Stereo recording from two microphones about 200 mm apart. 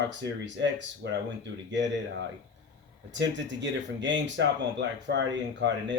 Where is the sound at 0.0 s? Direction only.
60° right (ahead or behind).